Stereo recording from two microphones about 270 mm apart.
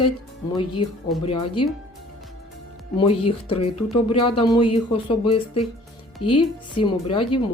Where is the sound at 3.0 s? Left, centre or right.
Left.